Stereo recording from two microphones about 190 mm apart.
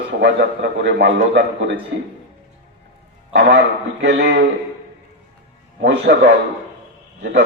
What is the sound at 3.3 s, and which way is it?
A man's voice, 65° right (ahead or behind).